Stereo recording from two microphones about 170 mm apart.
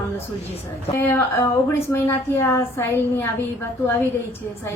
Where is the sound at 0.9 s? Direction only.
15° left (ahead or behind).